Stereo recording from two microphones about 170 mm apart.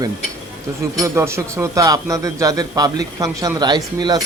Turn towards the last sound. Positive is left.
turn(degrees=-25)  # may be behind; listen again after turning